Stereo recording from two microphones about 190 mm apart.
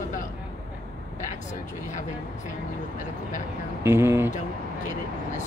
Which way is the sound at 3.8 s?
10° right (ahead or behind).